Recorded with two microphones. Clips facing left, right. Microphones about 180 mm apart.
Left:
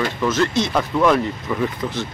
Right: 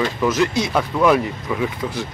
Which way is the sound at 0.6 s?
Centre (ahead or behind).